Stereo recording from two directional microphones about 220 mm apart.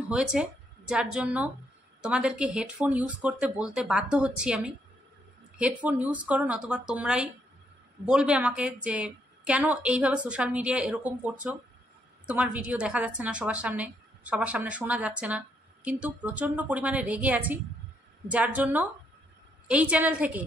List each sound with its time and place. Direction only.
0.1 s a woman's voice: 5° right (ahead or behind)